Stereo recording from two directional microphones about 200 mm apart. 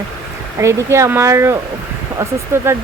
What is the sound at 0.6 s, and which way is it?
Speech, 15° right (ahead or behind).